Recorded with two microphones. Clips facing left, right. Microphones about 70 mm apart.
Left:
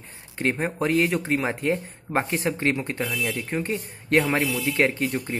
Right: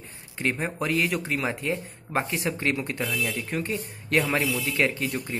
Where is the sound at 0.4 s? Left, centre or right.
Left.